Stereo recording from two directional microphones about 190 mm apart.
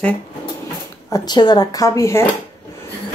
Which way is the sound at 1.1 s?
20° left (ahead or behind).